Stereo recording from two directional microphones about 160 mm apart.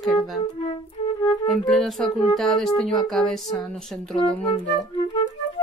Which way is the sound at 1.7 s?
Centre (ahead or behind).